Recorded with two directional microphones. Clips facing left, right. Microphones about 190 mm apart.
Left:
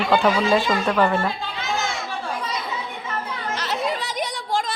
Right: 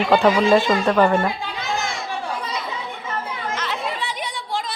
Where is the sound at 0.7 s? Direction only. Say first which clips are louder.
Right 3 dB; 15° right (ahead or behind).